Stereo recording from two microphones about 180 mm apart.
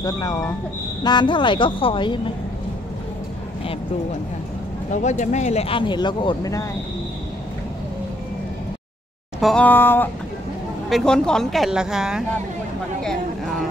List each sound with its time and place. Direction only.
0.0 s a woman's voice: 20° left (ahead or behind)
4.9 s speech: 45° left (ahead or behind); by 6.6 s 20° left (ahead or behind)
9.4 s speech: 5° left (ahead or behind)